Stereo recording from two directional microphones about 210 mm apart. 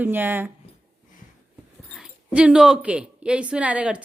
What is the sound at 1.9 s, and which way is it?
A woman's voice, 5° right (ahead or behind).